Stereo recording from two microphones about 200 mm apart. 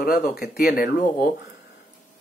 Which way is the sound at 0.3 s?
50° left (ahead or behind).